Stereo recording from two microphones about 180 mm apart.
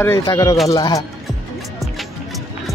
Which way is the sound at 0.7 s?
20° left (ahead or behind).